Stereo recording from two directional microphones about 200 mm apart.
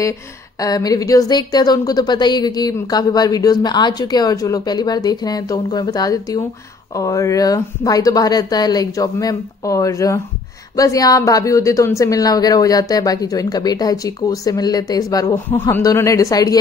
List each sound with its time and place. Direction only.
0.6 s a woman's voice: 20° left (ahead or behind)